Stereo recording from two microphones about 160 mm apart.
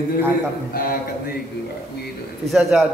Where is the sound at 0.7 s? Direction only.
65° left (ahead or behind).